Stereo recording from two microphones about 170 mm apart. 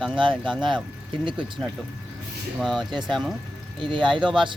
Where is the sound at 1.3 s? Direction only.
30° right (ahead or behind).